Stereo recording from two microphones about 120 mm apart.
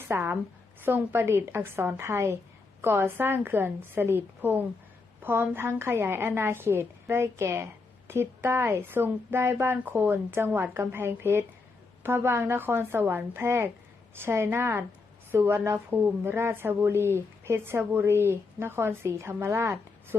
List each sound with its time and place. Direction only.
0.1 s a woman's voice: 20° right (ahead or behind)